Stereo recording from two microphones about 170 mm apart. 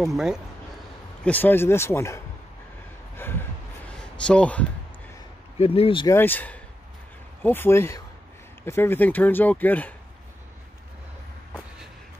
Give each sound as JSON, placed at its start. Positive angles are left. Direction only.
{"t": 0.0, "sound": "speech", "side_deg": 0}
{"t": 1.2, "sound": "speech", "side_deg": 10}
{"t": 5.6, "sound": "speech", "side_deg": 35}
{"t": 6.0, "sound": "speech", "side_deg": 10}